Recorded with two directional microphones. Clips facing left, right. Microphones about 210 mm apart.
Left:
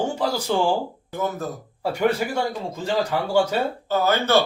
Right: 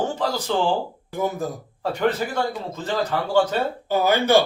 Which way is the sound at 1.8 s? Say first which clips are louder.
Left 1 dB; 10° left (ahead or behind).